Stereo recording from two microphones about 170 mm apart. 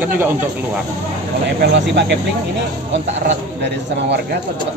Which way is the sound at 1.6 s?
90° right.